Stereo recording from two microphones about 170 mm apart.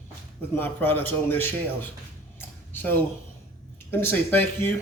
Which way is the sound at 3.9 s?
15° left (ahead or behind).